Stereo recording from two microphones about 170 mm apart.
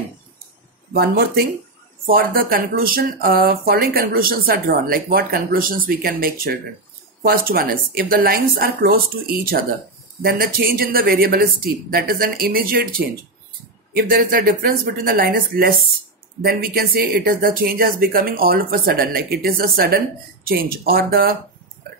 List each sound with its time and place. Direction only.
0.9 s speech: 65° right (ahead or behind)